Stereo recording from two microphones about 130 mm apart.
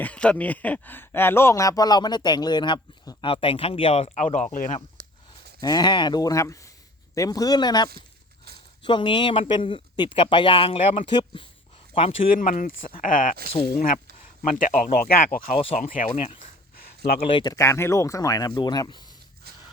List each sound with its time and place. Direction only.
0.0 s speech: 10° left (ahead or behind); by 4.1 s 45° left (ahead or behind)
4.1 s speech: 70° left (ahead or behind)
5.0 s a sound: 90° right
5.5 s speech: 35° left (ahead or behind)
12.4 s speech: 90° left
14.4 s speech: 90° left
15.5 s speech: 45° left (ahead or behind)
15.8 s speech: 90° left
16.1 s speech: 45° left (ahead or behind)
17.5 s speech: 20° left (ahead or behind)